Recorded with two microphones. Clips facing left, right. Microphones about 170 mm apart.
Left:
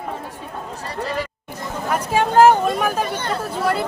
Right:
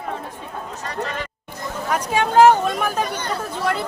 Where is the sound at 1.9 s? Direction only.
5° left (ahead or behind).